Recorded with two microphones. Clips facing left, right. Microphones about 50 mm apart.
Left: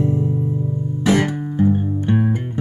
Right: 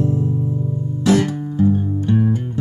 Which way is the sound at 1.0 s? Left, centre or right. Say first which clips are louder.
Right 1 dB; left.